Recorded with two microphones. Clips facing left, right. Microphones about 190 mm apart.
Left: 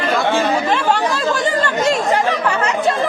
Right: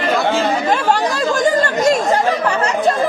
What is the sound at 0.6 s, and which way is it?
Chatter, 40° right (ahead or behind).